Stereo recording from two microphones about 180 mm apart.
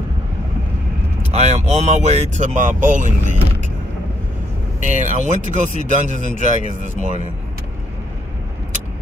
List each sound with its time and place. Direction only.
1.3 s speech: 40° right (ahead or behind)
4.7 s speech: 40° right (ahead or behind)